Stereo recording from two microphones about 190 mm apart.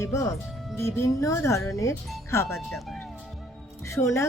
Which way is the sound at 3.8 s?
15° left (ahead or behind).